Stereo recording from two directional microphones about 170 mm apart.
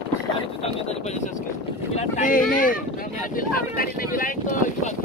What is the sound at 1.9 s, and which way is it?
Boat, 50° left (ahead or behind).